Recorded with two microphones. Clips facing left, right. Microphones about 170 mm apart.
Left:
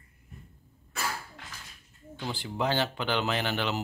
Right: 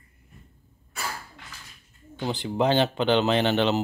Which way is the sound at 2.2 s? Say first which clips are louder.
Right 7 dB; 20° right (ahead or behind).